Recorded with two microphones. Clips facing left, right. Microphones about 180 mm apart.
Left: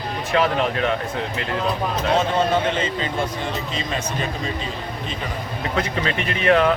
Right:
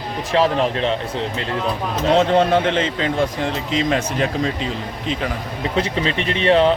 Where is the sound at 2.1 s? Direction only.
85° right.